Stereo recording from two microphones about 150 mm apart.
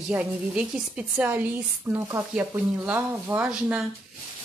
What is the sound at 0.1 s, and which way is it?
A woman's voice, 5° right (ahead or behind).